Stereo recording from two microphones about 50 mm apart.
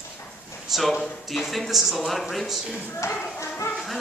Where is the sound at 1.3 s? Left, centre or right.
Centre.